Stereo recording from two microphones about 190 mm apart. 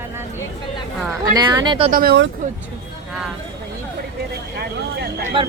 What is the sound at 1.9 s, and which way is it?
Speech, 55° right (ahead or behind).